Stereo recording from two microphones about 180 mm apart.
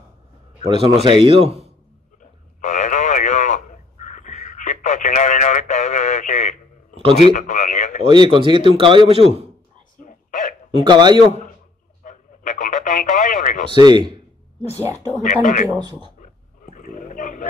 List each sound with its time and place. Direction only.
0.7 s a man's voice: 30° right (ahead or behind)
2.6 s radio: 45° left (ahead or behind)
7.3 s speech: 40° left (ahead or behind)
8.0 s speech: 30° right (ahead or behind)
10.0 s hiccup: 45° left (ahead or behind)
10.7 s speech: 25° right (ahead or behind)
12.0 s radio: 45° left (ahead or behind)
13.7 s speech: 25° right (ahead or behind)
15.2 s speech: 45° left (ahead or behind)
16.7 s a sound: 45° left (ahead or behind)